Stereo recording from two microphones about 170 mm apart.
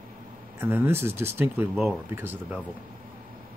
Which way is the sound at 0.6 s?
10° right (ahead or behind).